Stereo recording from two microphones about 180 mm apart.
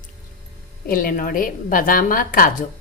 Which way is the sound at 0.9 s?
50° left (ahead or behind).